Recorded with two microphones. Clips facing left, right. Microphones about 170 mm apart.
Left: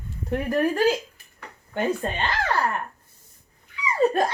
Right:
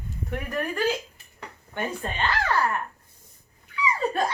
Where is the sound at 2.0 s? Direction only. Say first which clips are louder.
Left 4 dB; 40° left (ahead or behind).